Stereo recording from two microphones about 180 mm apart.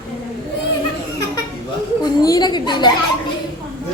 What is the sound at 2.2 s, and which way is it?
Speech, 20° left (ahead or behind).